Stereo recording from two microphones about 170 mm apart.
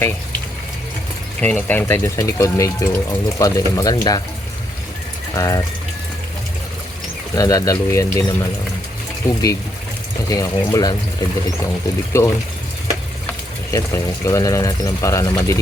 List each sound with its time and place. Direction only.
1.4 s speech: 10° left (ahead or behind)
5.3 s speech: 20° left (ahead or behind)
7.3 s speech: 20° left (ahead or behind)
13.7 s speech: 20° left (ahead or behind)